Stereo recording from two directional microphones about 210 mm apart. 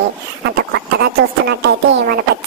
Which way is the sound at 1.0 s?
50° right (ahead or behind).